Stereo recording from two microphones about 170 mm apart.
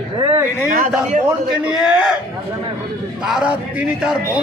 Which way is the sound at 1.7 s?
5° right (ahead or behind).